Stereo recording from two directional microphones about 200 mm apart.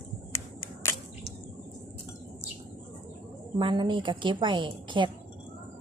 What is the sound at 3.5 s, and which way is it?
A woman's voice, 20° right (ahead or behind).